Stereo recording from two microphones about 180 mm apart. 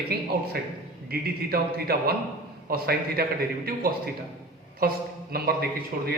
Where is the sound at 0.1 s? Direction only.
60° right (ahead or behind).